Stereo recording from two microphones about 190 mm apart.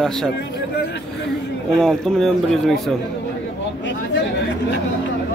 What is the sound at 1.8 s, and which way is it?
Speech, 5° left (ahead or behind).